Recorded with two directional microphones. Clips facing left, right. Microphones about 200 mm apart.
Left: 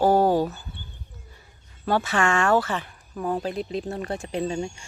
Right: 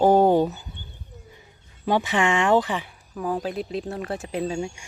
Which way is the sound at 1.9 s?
15° right (ahead or behind).